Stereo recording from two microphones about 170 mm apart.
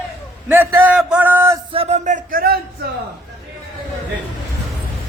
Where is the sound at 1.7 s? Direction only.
35° right (ahead or behind); by 2.5 s 55° right (ahead or behind).